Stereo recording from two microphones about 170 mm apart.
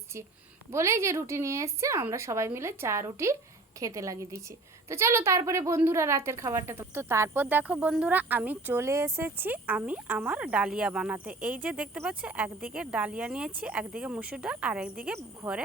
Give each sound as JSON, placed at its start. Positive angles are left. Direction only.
{"t": 0.7, "sound": "a woman's voice", "side_deg": -15}